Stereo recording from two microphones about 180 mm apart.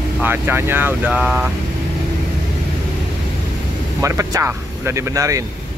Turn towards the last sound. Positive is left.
turn(degrees=-15)  # may be behind; listen again after turning